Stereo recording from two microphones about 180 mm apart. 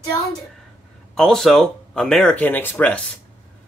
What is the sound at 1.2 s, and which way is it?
Speech, 5° left (ahead or behind).